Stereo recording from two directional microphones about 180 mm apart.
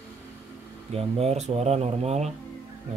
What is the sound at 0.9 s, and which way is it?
Speech, 35° right (ahead or behind).